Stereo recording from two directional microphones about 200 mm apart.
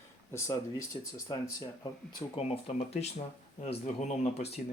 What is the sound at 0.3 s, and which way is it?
Speech, 15° left (ahead or behind).